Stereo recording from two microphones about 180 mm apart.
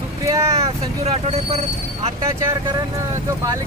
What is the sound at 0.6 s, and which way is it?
Speech, 35° right (ahead or behind).